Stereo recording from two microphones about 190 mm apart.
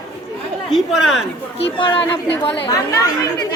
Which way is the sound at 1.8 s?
25° left (ahead or behind).